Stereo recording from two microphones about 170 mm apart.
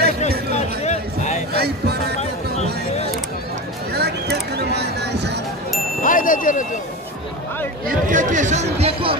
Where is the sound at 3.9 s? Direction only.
70° right (ahead or behind).